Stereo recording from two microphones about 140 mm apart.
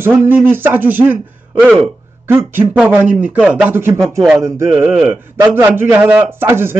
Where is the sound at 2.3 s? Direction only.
15° right (ahead or behind).